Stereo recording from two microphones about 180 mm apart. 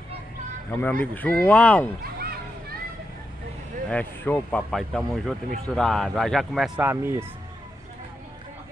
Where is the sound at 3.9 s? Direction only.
10° left (ahead or behind).